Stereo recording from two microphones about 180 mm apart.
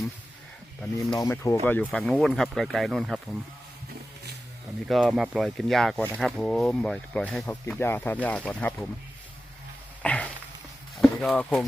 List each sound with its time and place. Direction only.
1.2 s speech: 15° left (ahead or behind); by 3.2 s centre (ahead or behind)
4.9 s speech: centre (ahead or behind)
10.0 s a sound: 5° left (ahead or behind)
10.9 s speech: centre (ahead or behind)